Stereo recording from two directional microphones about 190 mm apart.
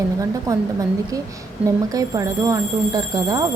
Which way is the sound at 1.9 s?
20° right (ahead or behind).